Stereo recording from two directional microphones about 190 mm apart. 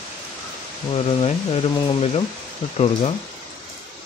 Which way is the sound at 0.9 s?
30° left (ahead or behind).